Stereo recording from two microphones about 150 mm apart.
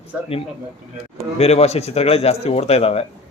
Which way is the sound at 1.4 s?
45° left (ahead or behind).